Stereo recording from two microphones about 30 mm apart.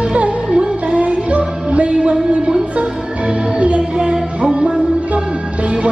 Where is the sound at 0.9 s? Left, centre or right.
Right.